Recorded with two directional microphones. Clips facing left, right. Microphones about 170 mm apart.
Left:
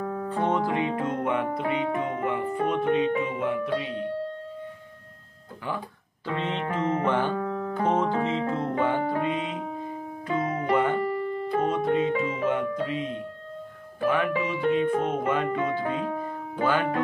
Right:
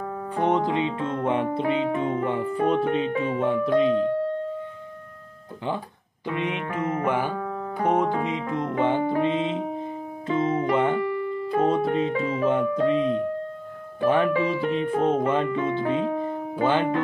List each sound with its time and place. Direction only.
0.3 s speech: 20° right (ahead or behind); by 4.1 s 35° right (ahead or behind)
6.2 s music: 15° right (ahead or behind)
6.8 s music: 30° left (ahead or behind)
7.1 s speech: 10° right (ahead or behind)